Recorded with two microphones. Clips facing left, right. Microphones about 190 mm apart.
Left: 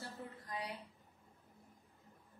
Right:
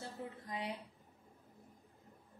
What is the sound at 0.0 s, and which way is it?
Speech, 25° right (ahead or behind).